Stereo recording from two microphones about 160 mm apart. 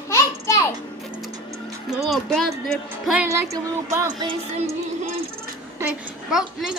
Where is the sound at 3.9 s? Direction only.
25° right (ahead or behind).